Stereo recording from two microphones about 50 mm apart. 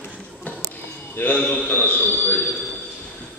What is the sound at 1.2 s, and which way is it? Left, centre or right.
Speech, left.